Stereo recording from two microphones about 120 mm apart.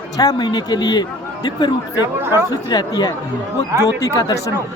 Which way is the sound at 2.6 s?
35° left (ahead or behind).